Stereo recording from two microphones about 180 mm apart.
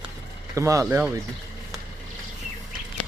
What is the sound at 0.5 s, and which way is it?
Speech, 15° right (ahead or behind).